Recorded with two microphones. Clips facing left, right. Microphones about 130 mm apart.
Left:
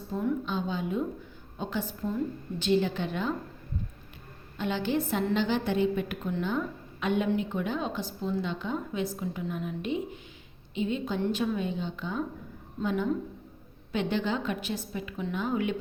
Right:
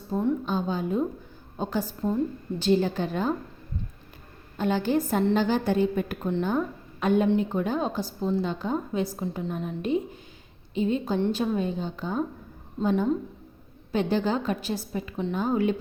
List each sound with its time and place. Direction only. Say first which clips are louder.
0.1 s a woman's voice: right 4 dB; 35° right (ahead or behind)
4.5 s a woman's voice: right 4 dB; 45° right (ahead or behind)